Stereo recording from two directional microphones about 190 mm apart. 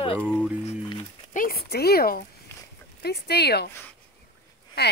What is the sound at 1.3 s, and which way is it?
Speech, 50° left (ahead or behind).